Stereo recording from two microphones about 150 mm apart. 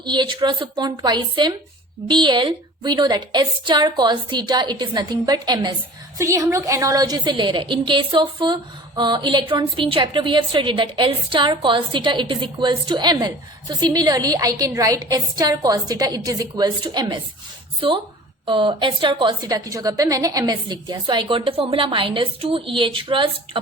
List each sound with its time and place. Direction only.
0.0 s a woman's voice: 30° right (ahead or behind)